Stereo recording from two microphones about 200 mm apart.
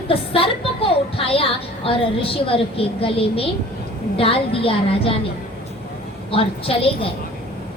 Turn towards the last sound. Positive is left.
turn(degrees=30)  # may be behind; listen again after turning